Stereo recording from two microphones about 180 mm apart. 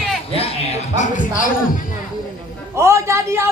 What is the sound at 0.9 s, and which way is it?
Speech, 45° left (ahead or behind).